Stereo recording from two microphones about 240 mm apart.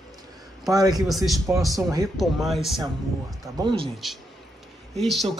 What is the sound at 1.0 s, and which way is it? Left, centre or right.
Speech, centre.